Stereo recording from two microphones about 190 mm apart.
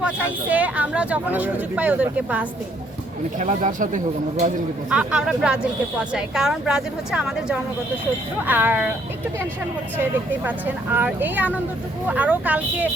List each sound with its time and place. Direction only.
0.0 s speech: 10° right (ahead or behind)
3.3 s speech: 45° right (ahead or behind)
4.9 s a woman's voice: 5° right (ahead or behind)
10.9 s speech: 10° right (ahead or behind)